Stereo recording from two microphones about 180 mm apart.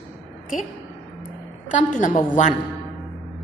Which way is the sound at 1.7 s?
45° left (ahead or behind).